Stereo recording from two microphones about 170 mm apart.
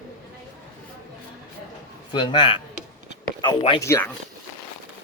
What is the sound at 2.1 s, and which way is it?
A man's voice, 30° left (ahead or behind).